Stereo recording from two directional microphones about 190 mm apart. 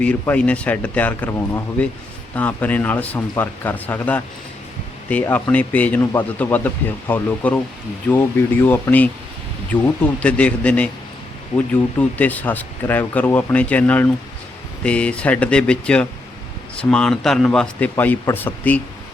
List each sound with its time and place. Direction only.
0.0 s speech: 5° left (ahead or behind)